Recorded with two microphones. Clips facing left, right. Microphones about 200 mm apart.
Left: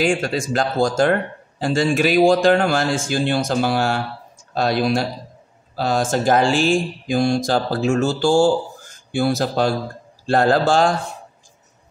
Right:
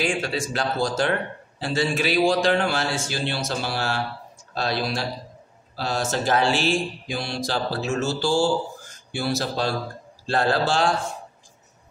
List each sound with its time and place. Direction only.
0.0 s speech: 45° left (ahead or behind)